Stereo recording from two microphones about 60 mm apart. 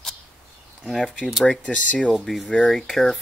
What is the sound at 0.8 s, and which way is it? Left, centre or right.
Speech, centre.